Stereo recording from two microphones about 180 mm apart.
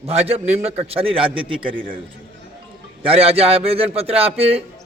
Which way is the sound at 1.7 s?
50° right (ahead or behind).